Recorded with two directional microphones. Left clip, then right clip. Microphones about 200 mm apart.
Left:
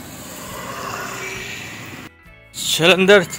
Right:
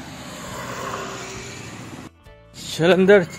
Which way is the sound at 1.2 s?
55° right (ahead or behind).